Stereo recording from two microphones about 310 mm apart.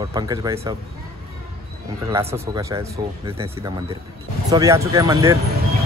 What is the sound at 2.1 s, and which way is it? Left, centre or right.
Speech, centre.